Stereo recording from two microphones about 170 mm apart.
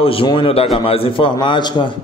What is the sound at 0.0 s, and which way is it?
A man's voice, 30° left (ahead or behind).